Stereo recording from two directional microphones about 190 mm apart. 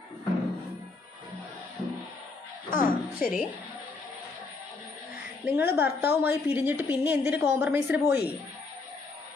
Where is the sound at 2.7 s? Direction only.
45° left (ahead or behind).